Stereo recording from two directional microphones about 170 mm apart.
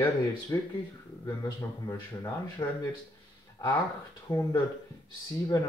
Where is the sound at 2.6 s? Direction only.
30° left (ahead or behind).